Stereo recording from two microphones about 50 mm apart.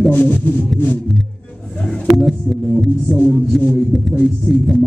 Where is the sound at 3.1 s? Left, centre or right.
Centre.